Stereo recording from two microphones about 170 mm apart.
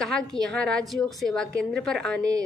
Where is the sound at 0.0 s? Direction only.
5° left (ahead or behind).